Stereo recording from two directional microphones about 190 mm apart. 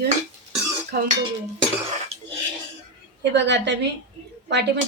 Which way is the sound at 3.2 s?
65° right (ahead or behind).